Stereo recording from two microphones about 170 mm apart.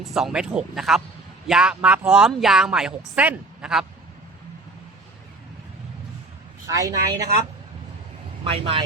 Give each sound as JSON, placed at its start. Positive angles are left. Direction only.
{"t": 0.0, "sound": "a woman's voice", "side_deg": 0}
{"t": 6.7, "sound": "a man's voice", "side_deg": -20}
{"t": 8.4, "sound": "speech", "side_deg": -35}